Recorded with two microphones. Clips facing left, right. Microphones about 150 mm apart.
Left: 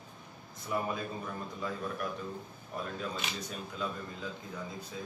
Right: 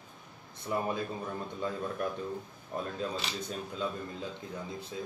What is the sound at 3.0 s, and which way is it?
Speech, 25° right (ahead or behind).